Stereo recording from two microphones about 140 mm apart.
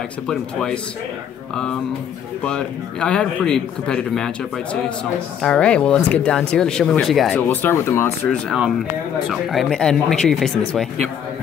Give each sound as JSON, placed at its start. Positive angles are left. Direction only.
{"t": 0.3, "sound": "a man's voice", "side_deg": 5}
{"t": 2.4, "sound": "a man's voice", "side_deg": 5}
{"t": 5.4, "sound": "speech", "side_deg": 5}
{"t": 7.4, "sound": "speech", "side_deg": 15}
{"t": 8.5, "sound": "a man's voice", "side_deg": 0}